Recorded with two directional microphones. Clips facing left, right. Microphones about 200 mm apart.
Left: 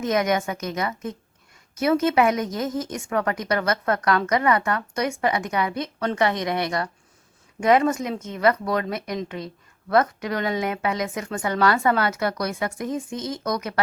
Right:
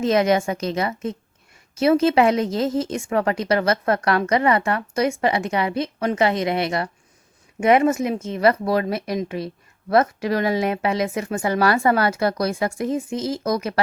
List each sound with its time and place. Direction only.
0.0 s speech: 30° right (ahead or behind)